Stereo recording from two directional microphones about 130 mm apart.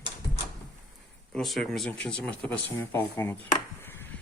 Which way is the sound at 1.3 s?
Centre (ahead or behind).